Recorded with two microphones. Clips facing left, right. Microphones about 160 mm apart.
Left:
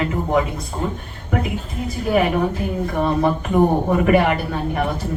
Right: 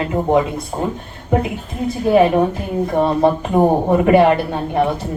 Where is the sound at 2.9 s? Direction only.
25° right (ahead or behind).